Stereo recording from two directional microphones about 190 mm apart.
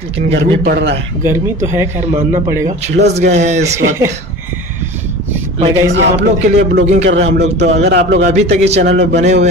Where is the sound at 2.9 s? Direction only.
60° right (ahead or behind).